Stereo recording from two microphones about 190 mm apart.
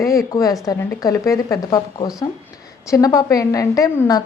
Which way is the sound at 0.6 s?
15° left (ahead or behind).